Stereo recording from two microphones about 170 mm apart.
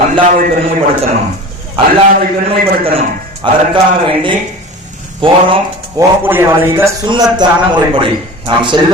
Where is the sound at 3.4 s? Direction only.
30° right (ahead or behind).